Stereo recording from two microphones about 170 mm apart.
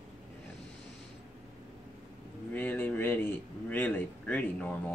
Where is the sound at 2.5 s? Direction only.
10° left (ahead or behind).